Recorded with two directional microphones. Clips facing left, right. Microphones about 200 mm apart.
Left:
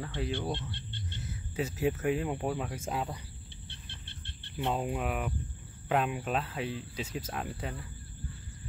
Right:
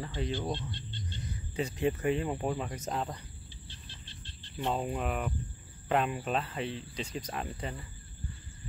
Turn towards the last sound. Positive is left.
turn(degrees=0)  # may be behind; listen again after turning